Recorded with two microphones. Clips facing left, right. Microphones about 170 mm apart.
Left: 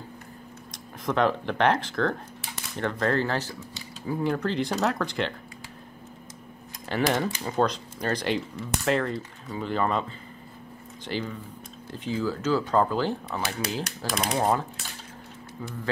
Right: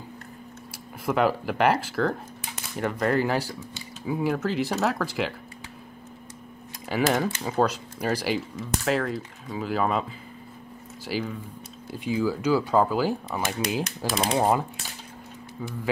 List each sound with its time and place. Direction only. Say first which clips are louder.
1.0 s speech: right 1 dB; 5° right (ahead or behind)
6.9 s speech: right 1 dB; 5° right (ahead or behind)
11.1 s speech: right 2 dB; 5° right (ahead or behind)